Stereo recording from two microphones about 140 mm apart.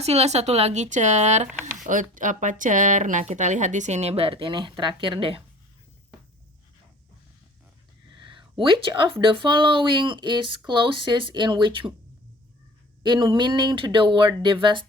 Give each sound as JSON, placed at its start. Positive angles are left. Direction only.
{"t": 0.0, "sound": "speech", "side_deg": -50}
{"t": 1.9, "sound": "speech", "side_deg": -70}
{"t": 8.1, "sound": "a sound", "side_deg": -35}
{"t": 9.2, "sound": "speech", "side_deg": -35}
{"t": 13.0, "sound": "speech", "side_deg": -35}